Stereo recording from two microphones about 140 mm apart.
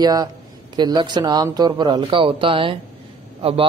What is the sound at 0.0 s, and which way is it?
A man's voice, 25° right (ahead or behind).